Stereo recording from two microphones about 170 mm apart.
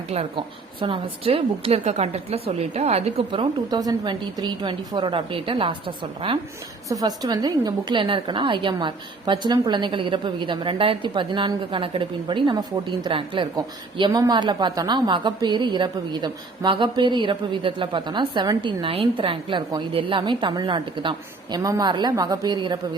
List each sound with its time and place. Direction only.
0.1 s a woman's voice: 35° right (ahead or behind)